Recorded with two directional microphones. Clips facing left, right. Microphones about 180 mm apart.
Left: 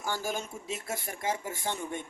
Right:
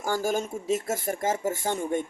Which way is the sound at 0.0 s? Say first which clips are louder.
Right 7 dB; 45° right (ahead or behind).